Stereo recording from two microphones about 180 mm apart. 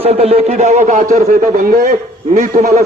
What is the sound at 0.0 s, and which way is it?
A man's voice, 35° right (ahead or behind).